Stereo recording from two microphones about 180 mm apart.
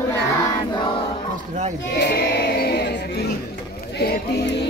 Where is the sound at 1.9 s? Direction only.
65° left (ahead or behind).